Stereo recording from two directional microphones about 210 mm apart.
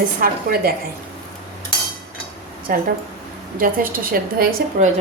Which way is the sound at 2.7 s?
40° right (ahead or behind).